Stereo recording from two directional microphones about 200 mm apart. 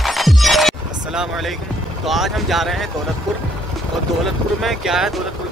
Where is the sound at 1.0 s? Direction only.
5° right (ahead or behind).